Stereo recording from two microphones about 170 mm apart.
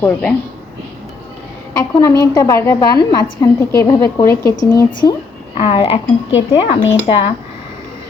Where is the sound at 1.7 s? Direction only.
20° left (ahead or behind).